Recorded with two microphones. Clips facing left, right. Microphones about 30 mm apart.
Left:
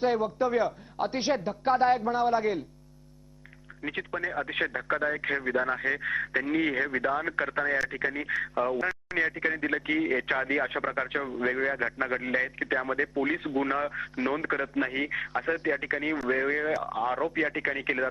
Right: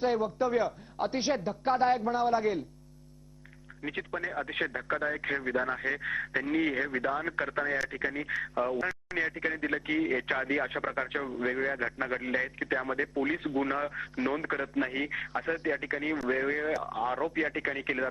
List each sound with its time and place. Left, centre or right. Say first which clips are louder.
0.0 s a man's voice: left 2 dB; centre
3.8 s a man's voice: left 3 dB; centre